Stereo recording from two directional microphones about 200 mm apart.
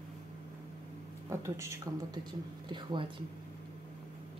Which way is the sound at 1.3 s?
15° right (ahead or behind).